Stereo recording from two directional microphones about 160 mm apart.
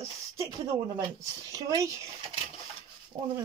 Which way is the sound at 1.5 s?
20° right (ahead or behind).